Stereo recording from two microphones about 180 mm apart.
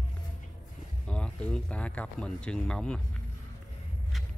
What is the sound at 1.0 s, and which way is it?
Speech, 5° left (ahead or behind).